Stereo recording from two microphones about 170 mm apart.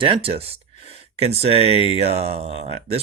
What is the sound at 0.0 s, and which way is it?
Speech, 30° right (ahead or behind).